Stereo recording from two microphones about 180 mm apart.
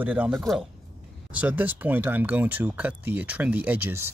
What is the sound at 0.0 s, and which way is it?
Speech, 10° right (ahead or behind).